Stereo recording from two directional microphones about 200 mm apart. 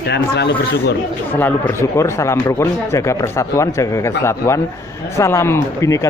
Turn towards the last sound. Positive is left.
turn(degrees=15)  # may be behind; listen again after turning